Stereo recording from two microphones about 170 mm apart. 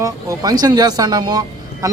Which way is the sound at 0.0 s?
20° right (ahead or behind).